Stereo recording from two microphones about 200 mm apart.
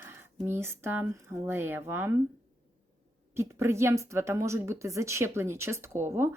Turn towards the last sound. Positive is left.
turn(degrees=-10)  # may be behind; listen again after turning